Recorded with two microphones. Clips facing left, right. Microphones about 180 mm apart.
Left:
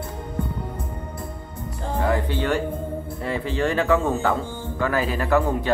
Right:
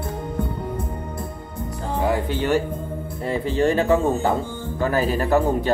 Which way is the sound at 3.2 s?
40° right (ahead or behind).